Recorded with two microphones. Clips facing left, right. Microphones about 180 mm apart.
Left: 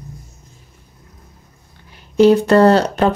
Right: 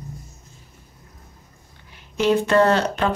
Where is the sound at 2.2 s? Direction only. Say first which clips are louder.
Left 7 dB; 35° left (ahead or behind).